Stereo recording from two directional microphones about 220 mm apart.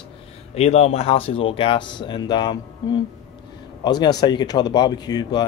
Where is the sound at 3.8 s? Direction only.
20° left (ahead or behind).